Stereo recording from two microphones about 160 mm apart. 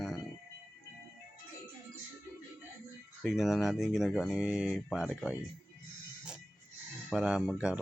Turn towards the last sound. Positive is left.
turn(degrees=-5)  # may be behind; listen again after turning